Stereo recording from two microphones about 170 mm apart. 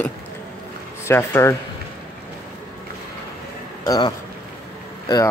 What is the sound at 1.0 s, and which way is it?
Speech, 15° left (ahead or behind).